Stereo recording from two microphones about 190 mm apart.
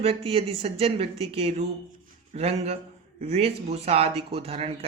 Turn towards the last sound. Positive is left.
turn(degrees=-30)  # may be behind; listen again after turning